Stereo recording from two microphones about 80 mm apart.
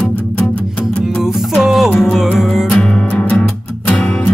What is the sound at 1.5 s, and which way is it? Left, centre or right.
Music, centre.